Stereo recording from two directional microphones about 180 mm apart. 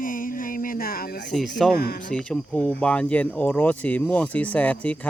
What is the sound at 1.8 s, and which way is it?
Speech, 60° left (ahead or behind).